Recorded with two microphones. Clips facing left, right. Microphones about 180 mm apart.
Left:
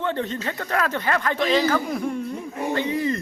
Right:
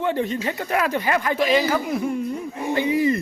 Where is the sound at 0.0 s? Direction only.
10° right (ahead or behind).